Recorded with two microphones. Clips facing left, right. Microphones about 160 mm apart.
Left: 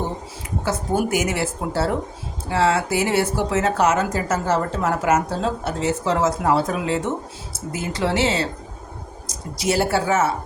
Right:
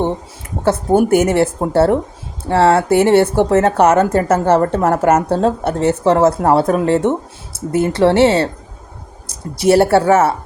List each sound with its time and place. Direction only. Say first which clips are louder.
0.6 s speech: right 9 dB; 55° right (ahead or behind)